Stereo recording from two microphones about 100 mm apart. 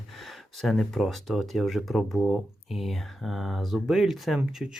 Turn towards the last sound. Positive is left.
turn(degrees=-5)  # may be behind; listen again after turning